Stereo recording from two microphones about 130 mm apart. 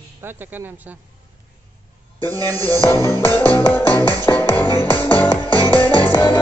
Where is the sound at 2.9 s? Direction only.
20° left (ahead or behind).